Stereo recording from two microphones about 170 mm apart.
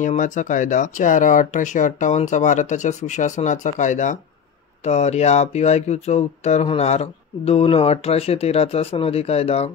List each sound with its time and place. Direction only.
0.0 s speech: 45° left (ahead or behind)